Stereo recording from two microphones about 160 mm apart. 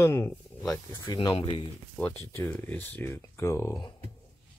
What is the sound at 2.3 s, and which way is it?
Speech, 15° left (ahead or behind).